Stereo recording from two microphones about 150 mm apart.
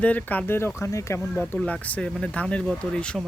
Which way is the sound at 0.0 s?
10° left (ahead or behind).